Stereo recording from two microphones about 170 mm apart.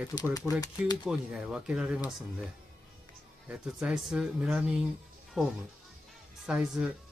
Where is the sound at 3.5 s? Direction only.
5° right (ahead or behind).